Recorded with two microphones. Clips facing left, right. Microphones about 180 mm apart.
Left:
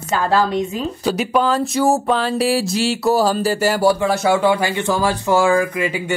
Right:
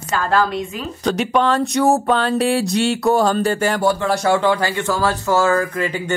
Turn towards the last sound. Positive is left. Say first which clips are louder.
# left 1 dB
turn(degrees=10)  # may be behind; listen again after turning